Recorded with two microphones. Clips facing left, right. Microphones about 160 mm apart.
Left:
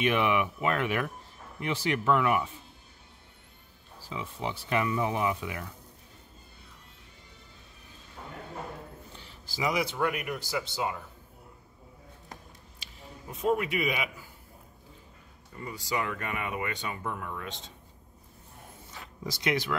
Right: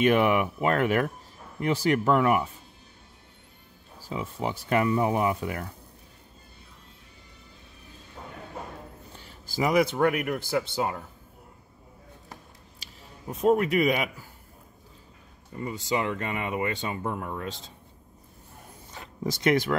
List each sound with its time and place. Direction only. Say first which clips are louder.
0.0 s speech: right 5 dB; 45° right (ahead or behind)
4.0 s speech: right 4 dB; 45° right (ahead or behind)
9.5 s speech: right 7 dB; 50° right (ahead or behind)
13.4 s speech: right 6 dB; 40° right (ahead or behind)
15.6 s speech: right 5 dB; 25° right (ahead or behind)
19.2 s speech: right 7 dB; 50° right (ahead or behind)